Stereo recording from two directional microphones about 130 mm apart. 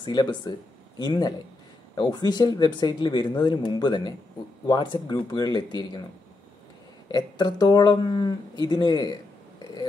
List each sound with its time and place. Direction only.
0.0 s speech: 35° left (ahead or behind)
7.1 s speech: 35° left (ahead or behind)